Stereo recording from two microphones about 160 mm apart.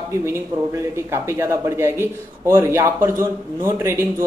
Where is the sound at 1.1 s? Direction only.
15° right (ahead or behind).